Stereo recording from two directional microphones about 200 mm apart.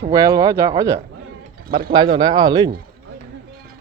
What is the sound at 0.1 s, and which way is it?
Speech, 15° right (ahead or behind).